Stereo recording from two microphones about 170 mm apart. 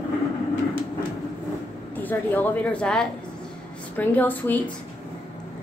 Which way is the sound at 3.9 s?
10° left (ahead or behind).